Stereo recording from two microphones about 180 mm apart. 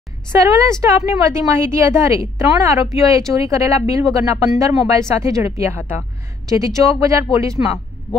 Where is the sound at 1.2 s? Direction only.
15° right (ahead or behind).